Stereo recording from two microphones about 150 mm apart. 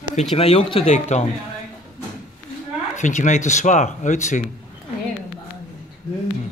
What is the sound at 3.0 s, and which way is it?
Speech, 55° left (ahead or behind).